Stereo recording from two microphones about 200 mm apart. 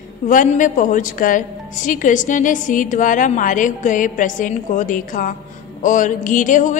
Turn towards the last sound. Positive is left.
turn(degrees=40)  # may be behind; listen again after turning